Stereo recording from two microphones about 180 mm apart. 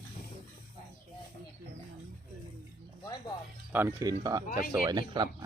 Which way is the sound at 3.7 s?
10° right (ahead or behind).